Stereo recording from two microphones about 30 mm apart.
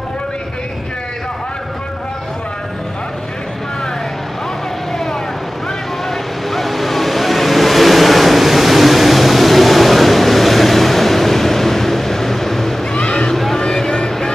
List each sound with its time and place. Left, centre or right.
6.0 s vehicle: centre
12.9 s a sound: left
13.6 s vehicle: centre